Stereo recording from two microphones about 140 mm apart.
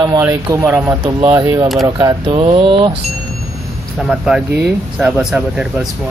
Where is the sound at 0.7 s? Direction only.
10° right (ahead or behind).